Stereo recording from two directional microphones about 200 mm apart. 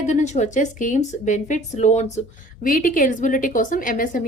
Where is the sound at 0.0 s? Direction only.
35° left (ahead or behind).